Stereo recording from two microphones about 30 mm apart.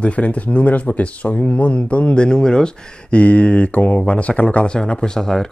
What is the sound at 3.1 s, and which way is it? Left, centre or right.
Speech, left.